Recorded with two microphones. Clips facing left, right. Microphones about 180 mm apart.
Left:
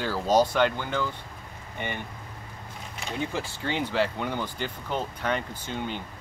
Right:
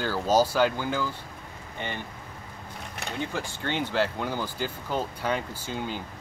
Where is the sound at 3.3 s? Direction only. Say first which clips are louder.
Even; centre (ahead or behind).